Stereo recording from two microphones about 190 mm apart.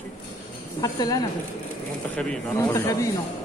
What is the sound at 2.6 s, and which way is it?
Speech, 20° left (ahead or behind).